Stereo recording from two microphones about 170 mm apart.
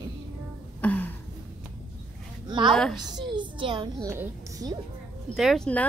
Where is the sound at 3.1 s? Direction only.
30° right (ahead or behind).